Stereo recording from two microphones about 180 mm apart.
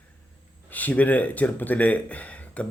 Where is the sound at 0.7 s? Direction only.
10° left (ahead or behind).